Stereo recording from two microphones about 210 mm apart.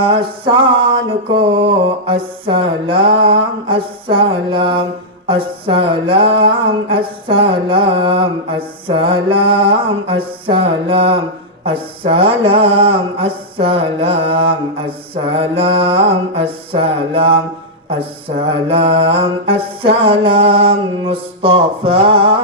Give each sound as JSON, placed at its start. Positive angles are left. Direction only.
{"t": 0.0, "sound": "mantra", "side_deg": -25}
{"t": 18.4, "sound": "mantra", "side_deg": -25}